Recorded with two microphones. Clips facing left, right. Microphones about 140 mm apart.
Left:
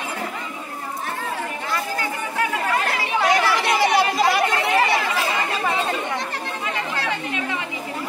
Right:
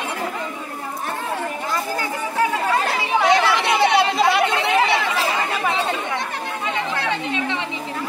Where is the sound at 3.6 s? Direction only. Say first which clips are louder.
Right 1 dB; 20° right (ahead or behind).